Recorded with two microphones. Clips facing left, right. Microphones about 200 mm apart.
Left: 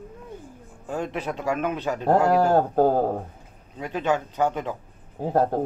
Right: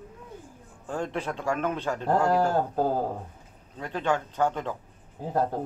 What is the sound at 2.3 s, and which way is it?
Speech, 65° left (ahead or behind).